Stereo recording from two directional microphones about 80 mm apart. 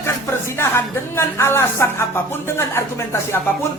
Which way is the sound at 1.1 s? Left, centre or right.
Left.